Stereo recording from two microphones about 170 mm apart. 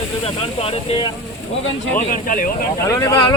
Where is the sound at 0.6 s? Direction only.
35° left (ahead or behind).